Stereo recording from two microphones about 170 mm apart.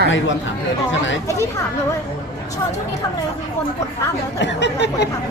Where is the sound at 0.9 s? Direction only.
90° left.